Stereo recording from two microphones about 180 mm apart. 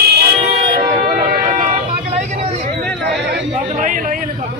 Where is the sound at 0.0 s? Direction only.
60° right (ahead or behind).